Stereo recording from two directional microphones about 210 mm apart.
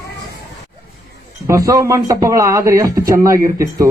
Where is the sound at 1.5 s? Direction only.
15° right (ahead or behind).